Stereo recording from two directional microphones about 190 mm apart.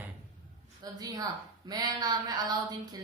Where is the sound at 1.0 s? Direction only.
20° right (ahead or behind).